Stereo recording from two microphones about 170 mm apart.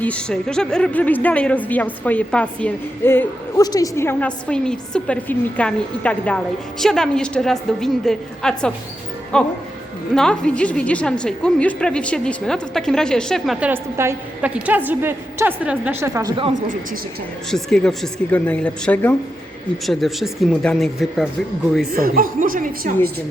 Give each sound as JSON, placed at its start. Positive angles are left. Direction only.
{"t": 0.0, "sound": "a woman's voice", "side_deg": 5}
{"t": 17.5, "sound": "a woman's voice", "side_deg": 5}
{"t": 21.9, "sound": "a woman's voice", "side_deg": -55}